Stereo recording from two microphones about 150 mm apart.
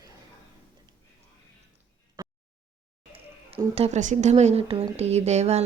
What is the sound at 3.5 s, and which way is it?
Speech, 45° right (ahead or behind).